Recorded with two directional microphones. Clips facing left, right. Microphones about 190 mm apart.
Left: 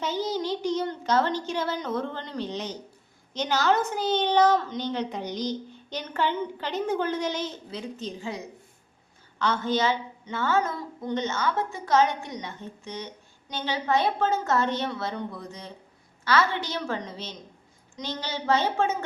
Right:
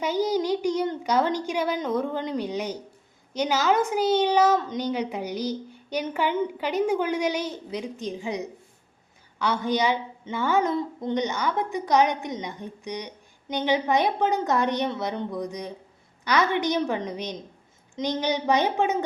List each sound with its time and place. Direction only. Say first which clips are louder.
0.0 s a woman's voice: right 4 dB; 10° right (ahead or behind)